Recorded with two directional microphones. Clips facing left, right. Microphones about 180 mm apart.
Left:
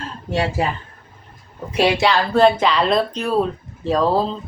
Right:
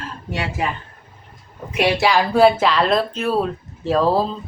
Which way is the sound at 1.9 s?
10° right (ahead or behind).